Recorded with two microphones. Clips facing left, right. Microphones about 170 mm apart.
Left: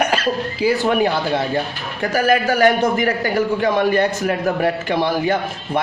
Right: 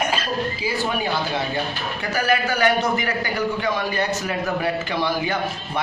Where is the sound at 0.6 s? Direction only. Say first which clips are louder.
Left 8 dB; 65° left (ahead or behind).